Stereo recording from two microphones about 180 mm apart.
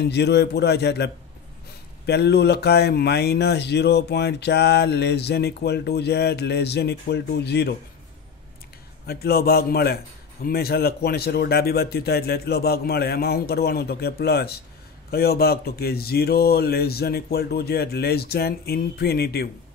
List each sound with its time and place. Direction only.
0.0 s speech: 70° left (ahead or behind)
9.0 s speech: 60° left (ahead or behind)